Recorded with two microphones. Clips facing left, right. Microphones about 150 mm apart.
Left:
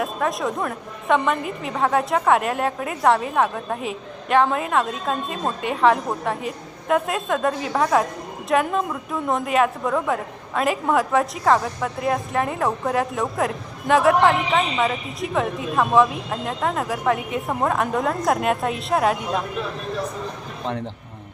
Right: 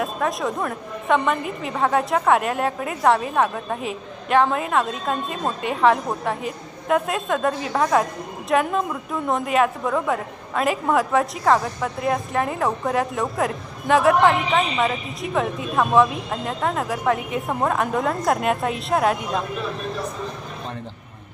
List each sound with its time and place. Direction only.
0.0 s a woman's voice: centre (ahead or behind)